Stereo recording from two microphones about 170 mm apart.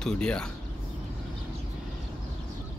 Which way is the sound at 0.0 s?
5° left (ahead or behind).